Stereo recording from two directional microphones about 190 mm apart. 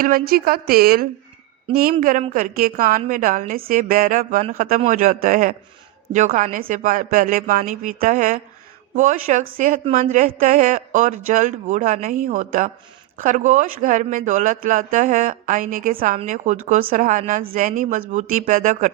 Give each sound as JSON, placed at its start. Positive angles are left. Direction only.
{"t": 0.0, "sound": "a woman's voice", "side_deg": -50}